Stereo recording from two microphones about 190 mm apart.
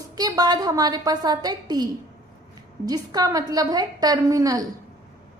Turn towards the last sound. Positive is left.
turn(degrees=-15)  # may be behind; listen again after turning